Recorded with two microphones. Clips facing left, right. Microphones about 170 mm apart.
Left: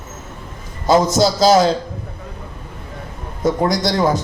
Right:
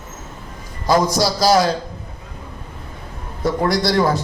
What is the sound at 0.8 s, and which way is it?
Speech, 25° left (ahead or behind).